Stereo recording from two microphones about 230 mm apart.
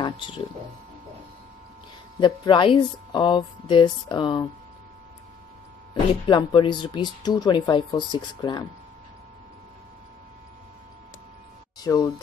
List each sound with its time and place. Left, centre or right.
2.1 s speech: centre
6.2 s speech: centre
11.8 s speech: centre